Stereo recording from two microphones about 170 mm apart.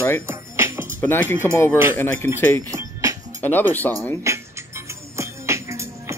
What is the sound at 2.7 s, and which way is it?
Music, 20° right (ahead or behind).